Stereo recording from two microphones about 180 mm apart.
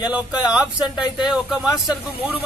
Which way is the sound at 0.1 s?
5° right (ahead or behind).